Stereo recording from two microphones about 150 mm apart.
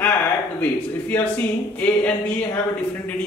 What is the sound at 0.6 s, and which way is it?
Speech, 10° left (ahead or behind).